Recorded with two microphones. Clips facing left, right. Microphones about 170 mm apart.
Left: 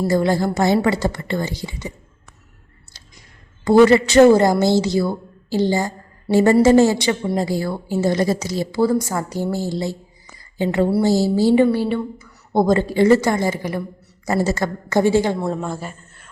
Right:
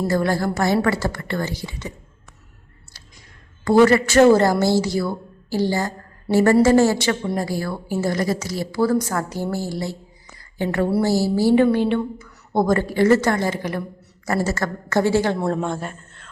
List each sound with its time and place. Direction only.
0.0 s a woman's voice: 15° left (ahead or behind)
3.6 s a woman's voice: 20° left (ahead or behind)
9.0 s a woman's voice: 10° left (ahead or behind)
12.5 s a woman's voice: 20° left (ahead or behind)
15.4 s speech: 5° left (ahead or behind)